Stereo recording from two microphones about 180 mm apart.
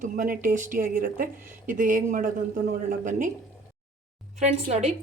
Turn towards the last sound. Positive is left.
turn(degrees=-35)  # may be behind; listen again after turning